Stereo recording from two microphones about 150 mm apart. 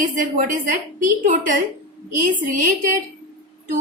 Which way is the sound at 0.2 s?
60° right (ahead or behind).